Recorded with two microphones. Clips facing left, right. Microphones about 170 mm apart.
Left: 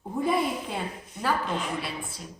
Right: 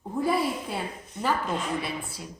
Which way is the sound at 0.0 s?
Centre (ahead or behind).